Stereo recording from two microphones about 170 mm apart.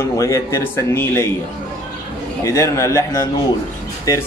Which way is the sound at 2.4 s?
20° left (ahead or behind).